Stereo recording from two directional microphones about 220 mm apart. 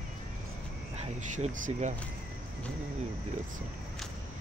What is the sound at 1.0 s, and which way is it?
Speech, 30° right (ahead or behind).